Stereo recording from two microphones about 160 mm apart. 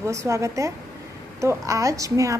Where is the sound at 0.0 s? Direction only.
20° right (ahead or behind).